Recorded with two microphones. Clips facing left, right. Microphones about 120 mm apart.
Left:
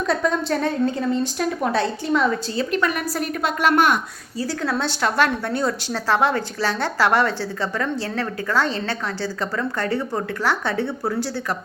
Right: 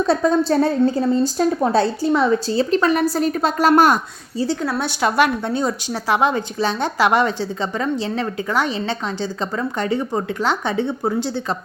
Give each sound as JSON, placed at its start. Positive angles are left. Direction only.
{"t": 0.0, "sound": "a woman's voice", "side_deg": -30}
{"t": 4.7, "sound": "a woman's voice", "side_deg": -15}